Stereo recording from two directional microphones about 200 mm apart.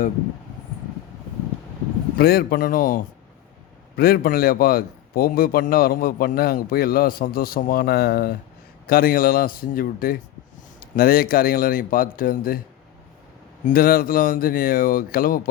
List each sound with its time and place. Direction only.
2.1 s a man's voice: 50° left (ahead or behind)
13.7 s a man's voice: 50° left (ahead or behind)